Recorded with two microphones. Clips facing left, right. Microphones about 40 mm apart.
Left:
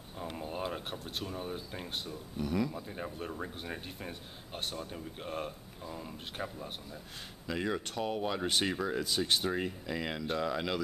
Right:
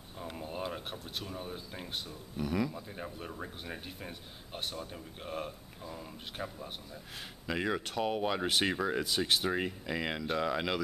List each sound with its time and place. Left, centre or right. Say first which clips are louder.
0.2 s speech: left 1 dB; centre
7.4 s speech: right 1 dB; centre